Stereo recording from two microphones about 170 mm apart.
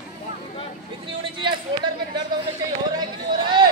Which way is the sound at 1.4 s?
30° right (ahead or behind).